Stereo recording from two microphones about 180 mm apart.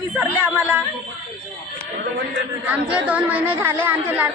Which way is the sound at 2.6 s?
10° right (ahead or behind).